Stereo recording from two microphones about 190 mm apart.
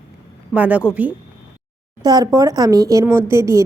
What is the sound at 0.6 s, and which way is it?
Speech, 5° right (ahead or behind).